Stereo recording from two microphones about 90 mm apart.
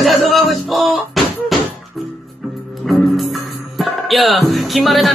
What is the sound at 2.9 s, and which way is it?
Speech, centre (ahead or behind).